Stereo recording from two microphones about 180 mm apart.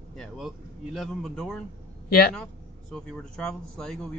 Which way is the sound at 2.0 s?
55° left (ahead or behind).